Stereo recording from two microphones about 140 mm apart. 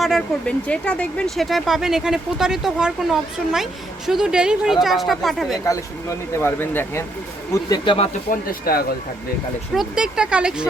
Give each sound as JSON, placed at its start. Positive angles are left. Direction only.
{"t": 0.0, "sound": "speech", "side_deg": 0}
{"t": 6.3, "sound": "speech", "side_deg": 15}
{"t": 7.5, "sound": "speech", "side_deg": 30}
{"t": 8.3, "sound": "speech", "side_deg": 90}
{"t": 9.7, "sound": "speech", "side_deg": -5}